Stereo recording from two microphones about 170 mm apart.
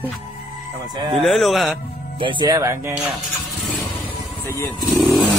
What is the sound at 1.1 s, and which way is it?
Speech, centre (ahead or behind).